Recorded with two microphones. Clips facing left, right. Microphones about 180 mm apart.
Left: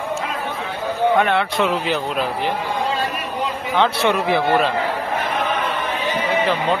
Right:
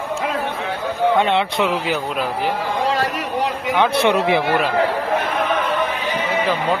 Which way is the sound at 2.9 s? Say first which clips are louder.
Right 3 dB; 80° right.